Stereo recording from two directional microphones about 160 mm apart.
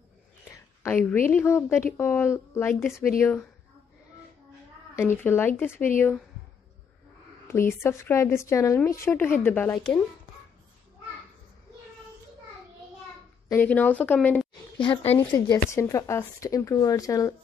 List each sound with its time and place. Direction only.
0.5 s a woman's voice: 15° left (ahead or behind)
4.9 s a woman's voice: 15° left (ahead or behind)
7.4 s a woman's voice: 15° left (ahead or behind)
13.5 s a woman's voice: 10° left (ahead or behind)
14.8 s speech: 30° left (ahead or behind)